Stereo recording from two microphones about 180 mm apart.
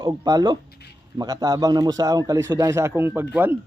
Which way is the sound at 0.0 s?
20° right (ahead or behind).